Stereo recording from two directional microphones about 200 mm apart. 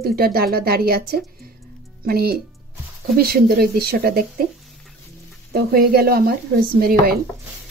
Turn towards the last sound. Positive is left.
turn(degrees=-50)  # may be behind; listen again after turning